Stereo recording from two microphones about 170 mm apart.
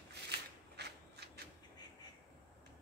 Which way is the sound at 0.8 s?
80° right.